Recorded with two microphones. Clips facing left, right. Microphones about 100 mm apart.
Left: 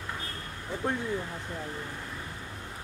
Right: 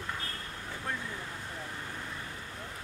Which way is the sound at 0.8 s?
25° left (ahead or behind).